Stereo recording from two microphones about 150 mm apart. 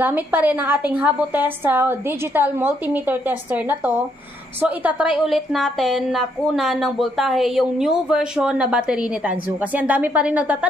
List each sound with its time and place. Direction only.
0.0 s a woman's voice: 10° right (ahead or behind)